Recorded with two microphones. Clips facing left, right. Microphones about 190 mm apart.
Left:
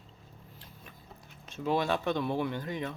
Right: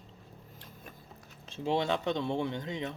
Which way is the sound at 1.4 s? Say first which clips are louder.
Left 1 dB; 30° right (ahead or behind).